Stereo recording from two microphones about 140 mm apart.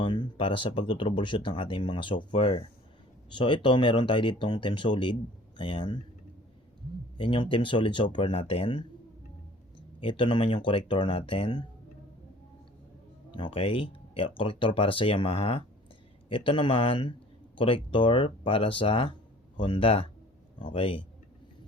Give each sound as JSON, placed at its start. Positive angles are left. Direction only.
{"t": 0.0, "sound": "speech", "side_deg": 35}
{"t": 7.2, "sound": "speech", "side_deg": 35}
{"t": 10.0, "sound": "speech", "side_deg": 35}
{"t": 13.3, "sound": "speech", "side_deg": 40}